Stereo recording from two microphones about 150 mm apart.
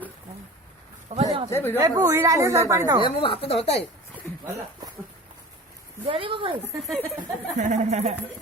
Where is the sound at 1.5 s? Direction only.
15° left (ahead or behind).